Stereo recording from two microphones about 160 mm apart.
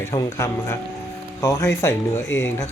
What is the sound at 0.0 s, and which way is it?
Speech, 20° left (ahead or behind).